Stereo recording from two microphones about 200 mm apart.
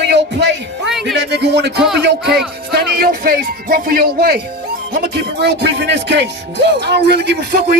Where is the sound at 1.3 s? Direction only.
55° right (ahead or behind).